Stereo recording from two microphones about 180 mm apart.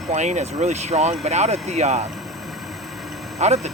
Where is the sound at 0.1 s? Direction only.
40° right (ahead or behind).